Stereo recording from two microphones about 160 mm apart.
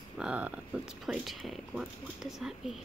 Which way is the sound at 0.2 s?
5° right (ahead or behind).